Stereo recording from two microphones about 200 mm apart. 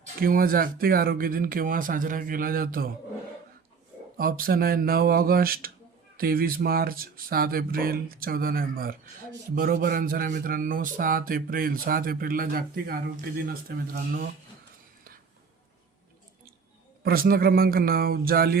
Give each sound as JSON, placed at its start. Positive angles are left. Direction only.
{"t": 0.0, "sound": "speech", "side_deg": -45}
{"t": 4.2, "sound": "speech", "side_deg": -45}
{"t": 17.0, "sound": "speech", "side_deg": -50}